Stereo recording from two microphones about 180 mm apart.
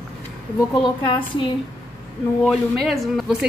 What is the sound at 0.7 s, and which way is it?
Speech, 25° left (ahead or behind).